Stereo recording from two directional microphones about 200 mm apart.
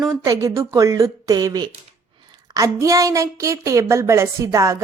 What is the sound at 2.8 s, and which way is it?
Speech, 15° right (ahead or behind).